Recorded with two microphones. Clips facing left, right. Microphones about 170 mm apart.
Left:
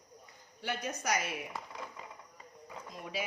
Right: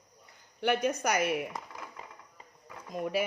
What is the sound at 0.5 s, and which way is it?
Speech, 65° right (ahead or behind).